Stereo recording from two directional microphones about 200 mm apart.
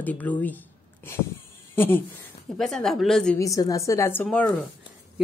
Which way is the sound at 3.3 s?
15° left (ahead or behind).